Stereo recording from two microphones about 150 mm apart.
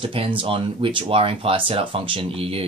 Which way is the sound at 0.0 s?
35° right (ahead or behind).